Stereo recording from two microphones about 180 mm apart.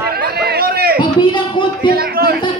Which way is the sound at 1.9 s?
55° right (ahead or behind).